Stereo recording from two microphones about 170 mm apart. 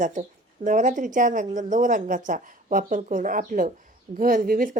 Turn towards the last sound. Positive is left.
turn(degrees=-55)  # may be behind; listen again after turning